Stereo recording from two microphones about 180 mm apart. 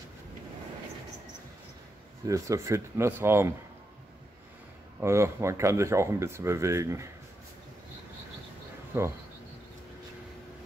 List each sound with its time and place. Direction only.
2.2 s speech: 20° right (ahead or behind)
5.0 s speech: 15° right (ahead or behind)
8.9 s speech: 10° right (ahead or behind)